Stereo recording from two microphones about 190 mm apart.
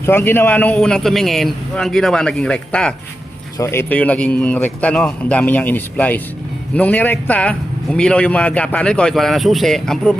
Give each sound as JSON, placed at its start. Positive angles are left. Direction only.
{"t": 0.0, "sound": "a man's voice", "side_deg": 10}